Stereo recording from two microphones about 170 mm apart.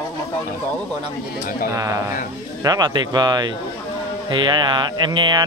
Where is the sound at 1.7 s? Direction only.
20° right (ahead or behind).